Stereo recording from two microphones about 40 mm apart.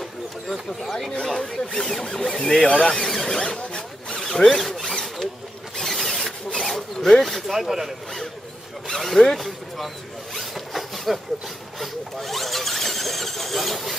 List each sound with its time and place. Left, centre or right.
0.5 s speech: centre
3.3 s zipper: left
4.2 s zipper: centre
8.8 s speech: centre
10.3 s zipper: centre
11.8 s squeal: centre